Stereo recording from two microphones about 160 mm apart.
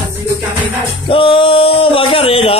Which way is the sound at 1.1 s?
35° left (ahead or behind).